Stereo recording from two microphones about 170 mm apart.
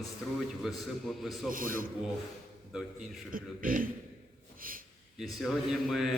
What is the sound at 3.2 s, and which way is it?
A man's voice, 55° right (ahead or behind).